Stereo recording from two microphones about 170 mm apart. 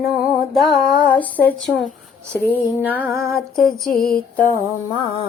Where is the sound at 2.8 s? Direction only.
10° right (ahead or behind).